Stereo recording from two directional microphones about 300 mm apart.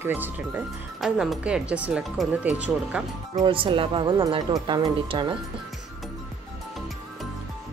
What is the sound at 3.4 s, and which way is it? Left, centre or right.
Speech, centre.